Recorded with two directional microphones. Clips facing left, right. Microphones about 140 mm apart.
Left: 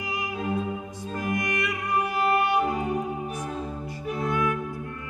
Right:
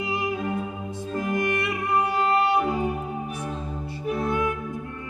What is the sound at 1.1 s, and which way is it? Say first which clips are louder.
Music: right 3 dB; 25° right (ahead or behind).